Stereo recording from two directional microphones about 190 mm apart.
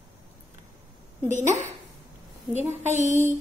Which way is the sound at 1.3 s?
40° right (ahead or behind).